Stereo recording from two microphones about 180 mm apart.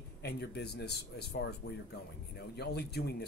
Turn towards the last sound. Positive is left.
turn(degrees=65)  # may be behind; listen again after turning